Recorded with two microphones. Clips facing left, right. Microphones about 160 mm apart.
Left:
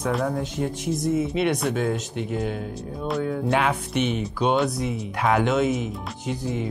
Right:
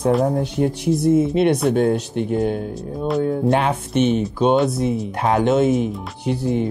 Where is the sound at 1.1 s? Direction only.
45° right (ahead or behind).